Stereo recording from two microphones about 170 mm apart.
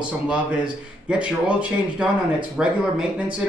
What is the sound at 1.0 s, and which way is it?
Speech, 5° right (ahead or behind).